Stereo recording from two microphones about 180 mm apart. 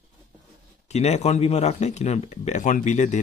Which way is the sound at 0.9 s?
35° left (ahead or behind).